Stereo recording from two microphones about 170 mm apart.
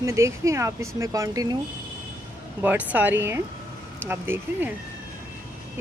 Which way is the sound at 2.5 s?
10° right (ahead or behind).